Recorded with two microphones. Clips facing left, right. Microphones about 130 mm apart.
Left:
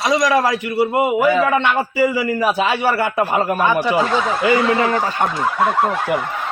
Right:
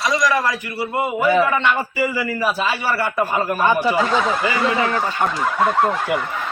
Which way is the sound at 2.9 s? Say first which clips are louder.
Left 3 dB; 20° left (ahead or behind).